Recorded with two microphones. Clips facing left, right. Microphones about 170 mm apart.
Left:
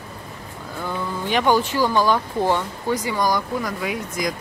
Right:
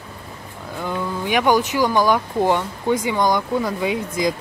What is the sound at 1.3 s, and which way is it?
Speech, 15° right (ahead or behind).